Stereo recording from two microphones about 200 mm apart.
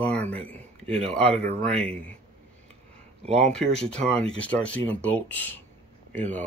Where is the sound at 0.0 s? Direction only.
10° left (ahead or behind).